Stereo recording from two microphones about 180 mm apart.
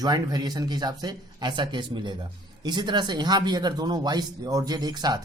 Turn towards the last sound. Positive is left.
turn(degrees=-25)  # may be behind; listen again after turning